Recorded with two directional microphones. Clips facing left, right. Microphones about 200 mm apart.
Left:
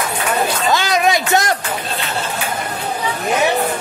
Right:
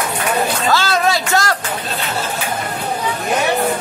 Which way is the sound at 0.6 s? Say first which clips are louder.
Left 1 dB; 15° left (ahead or behind).